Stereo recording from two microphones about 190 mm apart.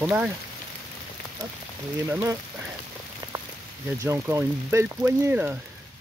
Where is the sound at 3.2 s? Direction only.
20° right (ahead or behind).